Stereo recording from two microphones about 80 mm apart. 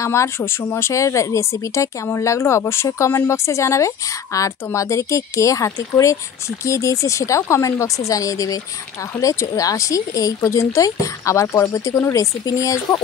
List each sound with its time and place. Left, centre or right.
0.0 s speech: left